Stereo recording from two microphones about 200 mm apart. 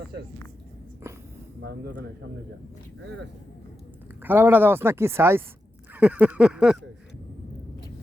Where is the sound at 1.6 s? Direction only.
55° right (ahead or behind).